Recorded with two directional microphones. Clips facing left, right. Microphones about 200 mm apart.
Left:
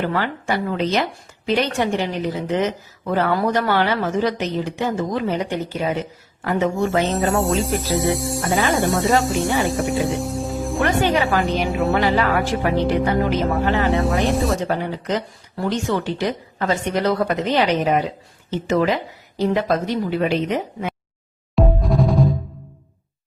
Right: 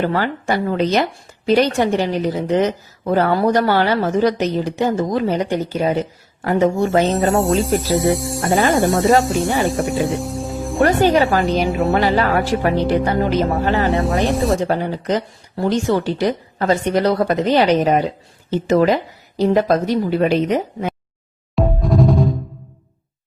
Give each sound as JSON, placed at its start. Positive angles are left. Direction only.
{"t": 0.0, "sound": "speech", "side_deg": -40}
{"t": 7.1, "sound": "speech", "side_deg": 0}
{"t": 11.0, "sound": "speech", "side_deg": -35}
{"t": 11.4, "sound": "speech", "side_deg": 0}
{"t": 11.9, "sound": "speech", "side_deg": -35}
{"t": 13.8, "sound": "speech", "side_deg": 0}
{"t": 14.7, "sound": "speech", "side_deg": -35}
{"t": 21.5, "sound": "music", "side_deg": 0}